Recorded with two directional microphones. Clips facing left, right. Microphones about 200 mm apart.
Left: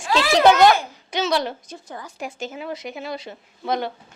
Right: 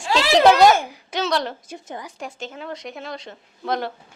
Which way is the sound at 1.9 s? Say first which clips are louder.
Right 2 dB; 15° right (ahead or behind).